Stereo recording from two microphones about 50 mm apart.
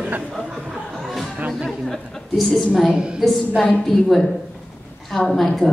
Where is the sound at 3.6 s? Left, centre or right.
Centre.